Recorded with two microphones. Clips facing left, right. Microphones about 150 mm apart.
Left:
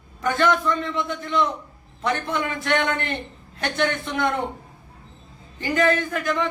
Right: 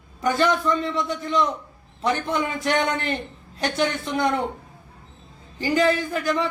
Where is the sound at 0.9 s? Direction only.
35° right (ahead or behind).